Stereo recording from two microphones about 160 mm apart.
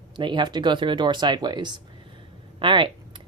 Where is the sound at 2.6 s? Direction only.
30° right (ahead or behind).